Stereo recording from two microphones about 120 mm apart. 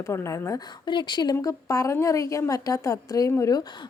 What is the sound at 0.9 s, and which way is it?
A woman's voice, 40° left (ahead or behind).